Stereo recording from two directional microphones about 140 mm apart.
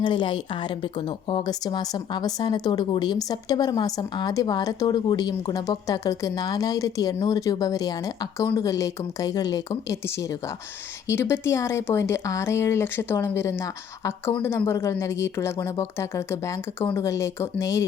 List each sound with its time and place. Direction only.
0.0 s a woman's voice: 35° left (ahead or behind)